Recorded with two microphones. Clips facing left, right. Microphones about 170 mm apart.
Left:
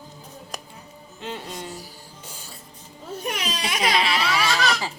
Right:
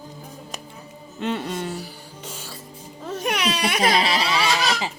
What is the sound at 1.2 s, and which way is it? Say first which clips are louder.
Music: right 8 dB; 65° right (ahead or behind).